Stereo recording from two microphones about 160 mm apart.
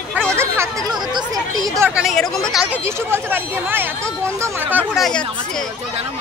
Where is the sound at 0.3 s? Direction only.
15° right (ahead or behind).